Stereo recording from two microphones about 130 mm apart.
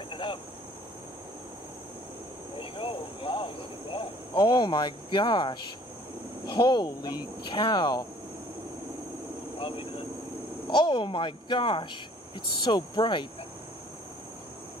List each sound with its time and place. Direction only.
0.1 s cricket: 40° left (ahead or behind)
2.6 s cricket: 40° left (ahead or behind)
6.5 s speech: 35° left (ahead or behind)
9.6 s cricket: 45° left (ahead or behind)
10.7 s speech: 40° left (ahead or behind)